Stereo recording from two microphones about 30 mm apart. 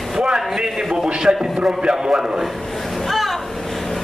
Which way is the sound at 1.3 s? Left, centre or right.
Right.